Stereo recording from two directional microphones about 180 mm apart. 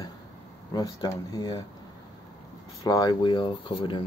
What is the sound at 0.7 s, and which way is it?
Speech, 20° left (ahead or behind).